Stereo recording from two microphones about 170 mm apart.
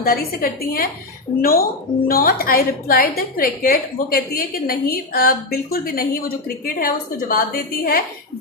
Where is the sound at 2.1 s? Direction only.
60° left (ahead or behind).